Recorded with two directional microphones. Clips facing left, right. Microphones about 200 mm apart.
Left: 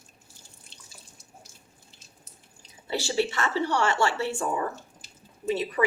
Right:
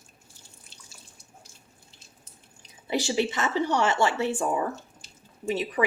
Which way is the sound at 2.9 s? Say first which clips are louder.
Right 1 dB; 15° right (ahead or behind).